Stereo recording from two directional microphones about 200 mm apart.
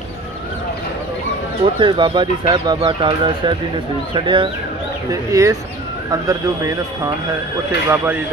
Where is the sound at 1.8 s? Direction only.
25° right (ahead or behind).